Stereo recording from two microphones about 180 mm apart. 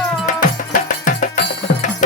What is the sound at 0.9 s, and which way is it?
Music, 45° left (ahead or behind).